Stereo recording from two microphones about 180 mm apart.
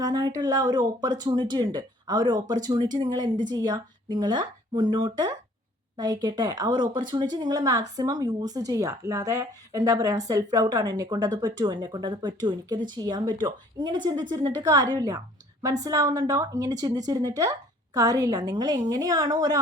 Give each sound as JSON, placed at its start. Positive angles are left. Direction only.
{"t": 0.0, "sound": "a woman's voice", "side_deg": -20}